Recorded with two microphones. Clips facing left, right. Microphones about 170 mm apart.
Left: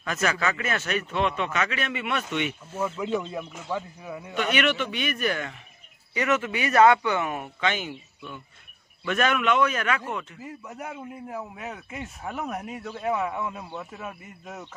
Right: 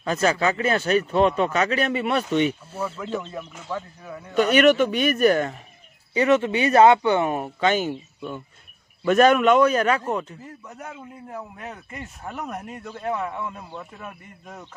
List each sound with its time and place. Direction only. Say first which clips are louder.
0.0 s speech: right 5 dB; 30° right (ahead or behind)
2.8 s a man's voice: left 2 dB; 10° left (ahead or behind)
4.4 s speech: right 9 dB; 40° right (ahead or behind)
6.1 s speech: right 7 dB; 30° right (ahead or behind)
10.4 s a man's voice: left 1 dB; 10° left (ahead or behind)